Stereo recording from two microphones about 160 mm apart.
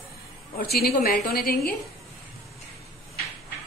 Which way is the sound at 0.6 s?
75° left (ahead or behind).